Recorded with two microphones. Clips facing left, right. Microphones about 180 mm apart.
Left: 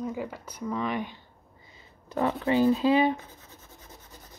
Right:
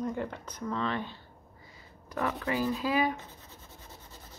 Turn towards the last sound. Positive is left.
turn(degrees=25)  # may be behind; listen again after turning